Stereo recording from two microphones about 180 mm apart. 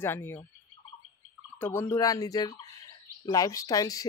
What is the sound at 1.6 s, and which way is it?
Speech, 10° left (ahead or behind).